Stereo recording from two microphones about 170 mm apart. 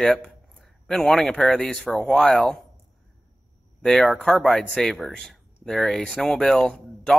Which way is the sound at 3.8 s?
Centre (ahead or behind).